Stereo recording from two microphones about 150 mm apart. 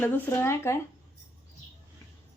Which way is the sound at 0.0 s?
15° left (ahead or behind).